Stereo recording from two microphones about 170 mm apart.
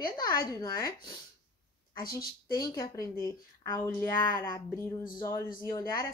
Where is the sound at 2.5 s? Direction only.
20° left (ahead or behind).